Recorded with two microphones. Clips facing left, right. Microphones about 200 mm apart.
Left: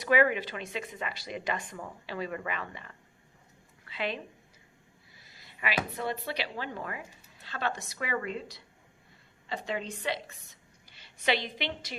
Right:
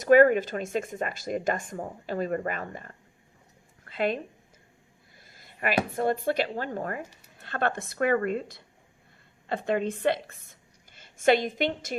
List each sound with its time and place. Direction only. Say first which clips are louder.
0.0 s a woman's voice: right 8 dB; 45° right (ahead or behind)